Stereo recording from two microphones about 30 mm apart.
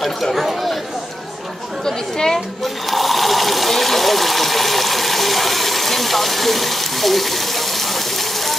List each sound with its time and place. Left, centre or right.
0.0 s speech: centre
1.9 s speech: centre
2.6 s water: centre